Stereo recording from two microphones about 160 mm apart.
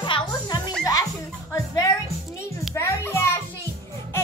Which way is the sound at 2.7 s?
15° left (ahead or behind).